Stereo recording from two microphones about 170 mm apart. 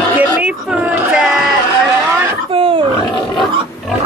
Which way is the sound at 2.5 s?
30° right (ahead or behind).